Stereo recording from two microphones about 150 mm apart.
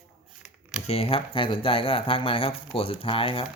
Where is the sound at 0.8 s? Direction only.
40° left (ahead or behind).